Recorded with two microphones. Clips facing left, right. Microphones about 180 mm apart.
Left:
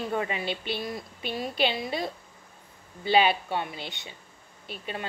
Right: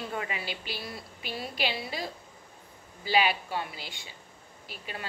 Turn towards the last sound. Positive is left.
turn(degrees=25)  # may be behind; listen again after turning